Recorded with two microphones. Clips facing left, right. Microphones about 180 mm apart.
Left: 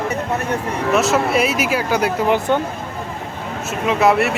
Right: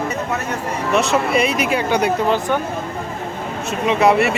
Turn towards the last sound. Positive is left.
turn(degrees=0)  # may be behind; listen again after turning